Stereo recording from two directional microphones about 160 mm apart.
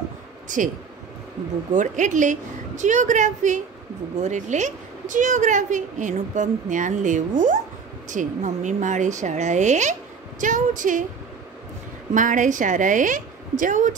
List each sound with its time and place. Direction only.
1.7 s a woman's voice: 50° right (ahead or behind)
12.1 s a woman's voice: 55° right (ahead or behind)